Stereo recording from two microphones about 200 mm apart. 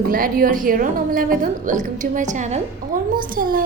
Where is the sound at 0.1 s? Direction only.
45° right (ahead or behind).